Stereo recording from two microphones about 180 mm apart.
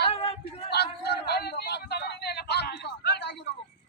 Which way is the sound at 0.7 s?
65° left (ahead or behind).